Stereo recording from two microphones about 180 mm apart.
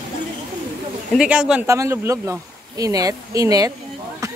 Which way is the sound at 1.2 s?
5° right (ahead or behind).